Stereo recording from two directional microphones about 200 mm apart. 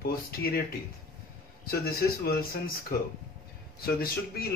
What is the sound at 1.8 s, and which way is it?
Speech, 50° left (ahead or behind).